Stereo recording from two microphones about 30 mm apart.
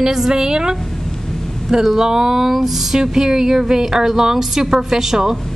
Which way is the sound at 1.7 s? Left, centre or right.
Centre.